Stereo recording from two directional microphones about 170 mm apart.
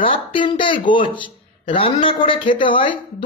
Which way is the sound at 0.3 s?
30° left (ahead or behind).